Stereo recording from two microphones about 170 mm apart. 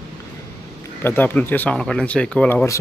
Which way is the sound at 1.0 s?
10° left (ahead or behind).